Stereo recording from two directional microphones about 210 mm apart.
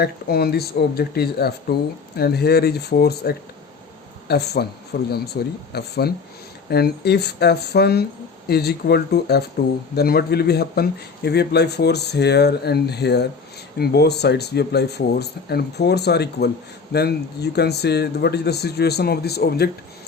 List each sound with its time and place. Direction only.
0.0 s speech: 45° left (ahead or behind)